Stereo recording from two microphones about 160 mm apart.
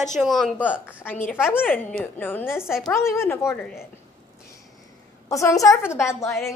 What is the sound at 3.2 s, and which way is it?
Speech, 15° left (ahead or behind).